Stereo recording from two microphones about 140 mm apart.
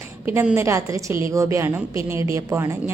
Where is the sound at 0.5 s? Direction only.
20° right (ahead or behind).